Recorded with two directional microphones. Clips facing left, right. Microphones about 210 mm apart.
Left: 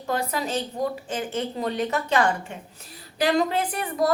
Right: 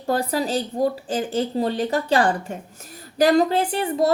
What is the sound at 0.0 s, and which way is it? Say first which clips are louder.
A woman's voice: right 5 dB; 35° right (ahead or behind).